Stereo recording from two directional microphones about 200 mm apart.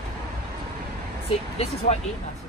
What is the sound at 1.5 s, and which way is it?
Speech, 30° left (ahead or behind).